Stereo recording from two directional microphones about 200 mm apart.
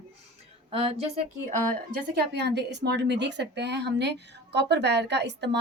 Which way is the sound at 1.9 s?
55° right (ahead or behind).